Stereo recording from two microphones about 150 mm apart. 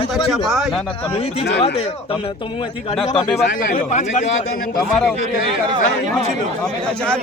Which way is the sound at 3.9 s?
55° left (ahead or behind).